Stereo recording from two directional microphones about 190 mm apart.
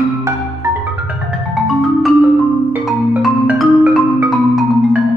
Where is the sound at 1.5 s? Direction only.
Centre (ahead or behind).